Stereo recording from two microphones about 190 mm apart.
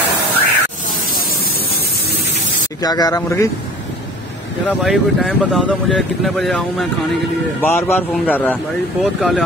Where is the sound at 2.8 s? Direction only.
20° left (ahead or behind).